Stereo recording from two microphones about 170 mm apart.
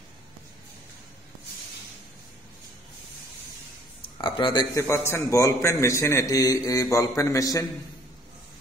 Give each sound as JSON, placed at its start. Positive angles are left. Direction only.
{"t": 4.2, "sound": "a man's voice", "side_deg": 25}